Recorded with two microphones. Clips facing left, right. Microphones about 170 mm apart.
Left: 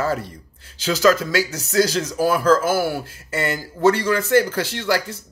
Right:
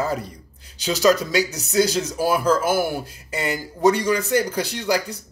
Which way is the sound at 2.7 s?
20° right (ahead or behind).